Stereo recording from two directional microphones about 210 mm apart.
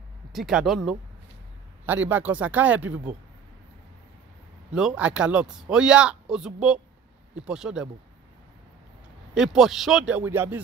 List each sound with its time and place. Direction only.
0.3 s speech: centre (ahead or behind)
2.0 s speech: 10° right (ahead or behind)
4.7 s speech: 5° right (ahead or behind)
9.3 s speech: 5° right (ahead or behind)